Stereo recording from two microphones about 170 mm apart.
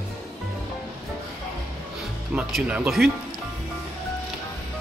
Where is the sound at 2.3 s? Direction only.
5° right (ahead or behind).